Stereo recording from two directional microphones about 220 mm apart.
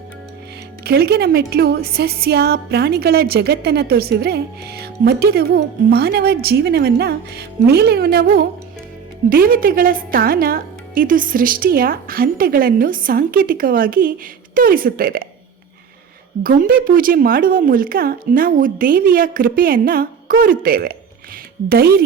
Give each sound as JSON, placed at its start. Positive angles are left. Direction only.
{"t": 0.9, "sound": "a woman's voice", "side_deg": -45}
{"t": 16.4, "sound": "a woman's voice", "side_deg": -40}